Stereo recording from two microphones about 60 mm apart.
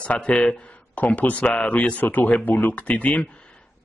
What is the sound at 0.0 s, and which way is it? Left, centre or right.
Speech, centre.